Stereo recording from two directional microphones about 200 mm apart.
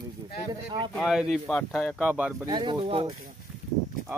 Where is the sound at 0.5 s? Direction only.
20° right (ahead or behind).